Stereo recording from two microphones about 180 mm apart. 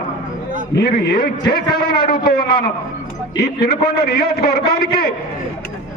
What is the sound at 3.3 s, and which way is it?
A man's voice, 65° left (ahead or behind).